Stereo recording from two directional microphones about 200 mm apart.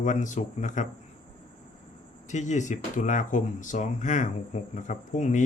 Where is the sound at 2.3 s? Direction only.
35° left (ahead or behind).